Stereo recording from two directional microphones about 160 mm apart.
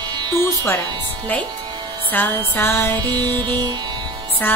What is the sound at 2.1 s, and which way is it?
A woman's voice, 15° left (ahead or behind).